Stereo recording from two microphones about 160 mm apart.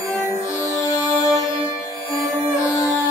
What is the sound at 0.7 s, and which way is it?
Music, 20° left (ahead or behind).